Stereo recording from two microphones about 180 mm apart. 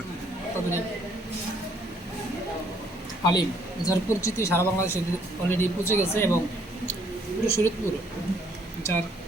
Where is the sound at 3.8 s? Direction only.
20° left (ahead or behind).